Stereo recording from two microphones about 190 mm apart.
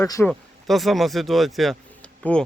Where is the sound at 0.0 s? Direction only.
15° left (ahead or behind).